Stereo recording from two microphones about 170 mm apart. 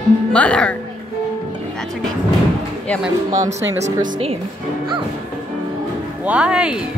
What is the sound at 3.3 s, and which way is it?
Speech, 45° right (ahead or behind).